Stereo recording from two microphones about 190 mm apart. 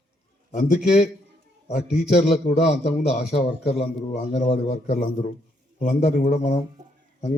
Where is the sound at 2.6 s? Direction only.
35° left (ahead or behind).